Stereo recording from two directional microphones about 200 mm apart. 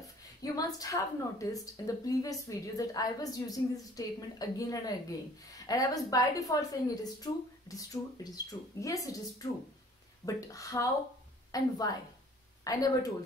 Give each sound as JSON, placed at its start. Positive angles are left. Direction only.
{"t": 0.4, "sound": "a woman's voice", "side_deg": 20}